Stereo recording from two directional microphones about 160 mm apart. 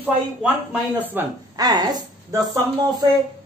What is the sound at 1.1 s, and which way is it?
Speech, 15° right (ahead or behind).